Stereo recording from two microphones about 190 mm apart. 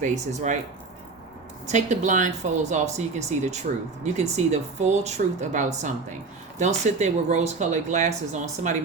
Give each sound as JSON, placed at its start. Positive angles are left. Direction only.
{"t": 0.0, "sound": "speech", "side_deg": -40}
{"t": 1.7, "sound": "speech", "side_deg": -40}